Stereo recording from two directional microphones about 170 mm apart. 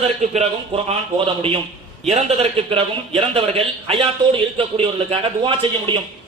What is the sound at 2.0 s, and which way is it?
A man's voice, 40° right (ahead or behind).